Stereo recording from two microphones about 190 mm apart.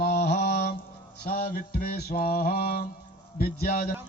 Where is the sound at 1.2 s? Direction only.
55° left (ahead or behind).